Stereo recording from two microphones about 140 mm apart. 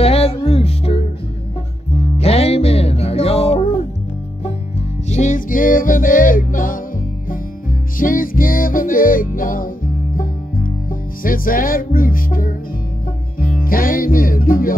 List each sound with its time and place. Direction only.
0.0 s music: 45° left (ahead or behind)
2.1 s music: 45° left (ahead or behind)
5.1 s music: 60° left (ahead or behind); by 6.8 s 75° left (ahead or behind)
8.0 s music: 80° left
10.1 s music: 90° left